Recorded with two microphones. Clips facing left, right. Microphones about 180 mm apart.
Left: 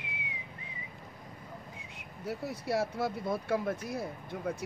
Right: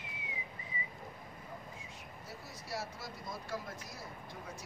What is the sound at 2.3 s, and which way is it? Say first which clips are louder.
Speech: left 12 dB; 60° left (ahead or behind).